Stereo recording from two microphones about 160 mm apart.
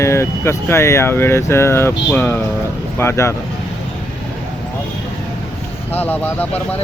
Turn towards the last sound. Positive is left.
turn(degrees=10)  # may be behind; listen again after turning